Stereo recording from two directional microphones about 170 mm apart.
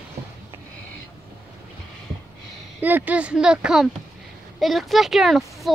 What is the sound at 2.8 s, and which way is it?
Speech, 10° right (ahead or behind).